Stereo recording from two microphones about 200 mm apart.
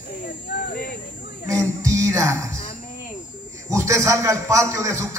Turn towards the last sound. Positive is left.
turn(degrees=-15)  # may be behind; listen again after turning